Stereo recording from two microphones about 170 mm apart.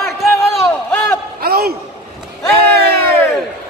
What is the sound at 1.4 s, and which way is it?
Speech, 65° right (ahead or behind).